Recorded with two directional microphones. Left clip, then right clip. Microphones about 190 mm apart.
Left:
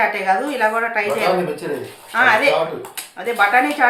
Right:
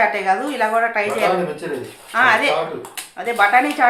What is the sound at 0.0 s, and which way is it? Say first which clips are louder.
Speech: even; 15° right (ahead or behind).